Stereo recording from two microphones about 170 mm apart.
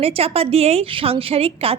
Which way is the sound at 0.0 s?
35° right (ahead or behind).